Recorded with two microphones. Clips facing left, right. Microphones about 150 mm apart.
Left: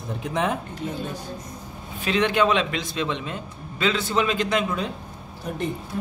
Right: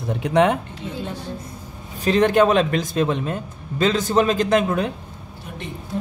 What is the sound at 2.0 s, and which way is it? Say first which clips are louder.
A man's voice: right 5 dB; 45° right (ahead or behind).